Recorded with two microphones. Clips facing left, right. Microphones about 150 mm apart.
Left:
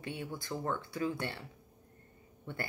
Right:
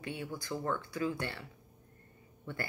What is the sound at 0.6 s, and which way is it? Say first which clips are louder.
Speech: even; 25° left (ahead or behind).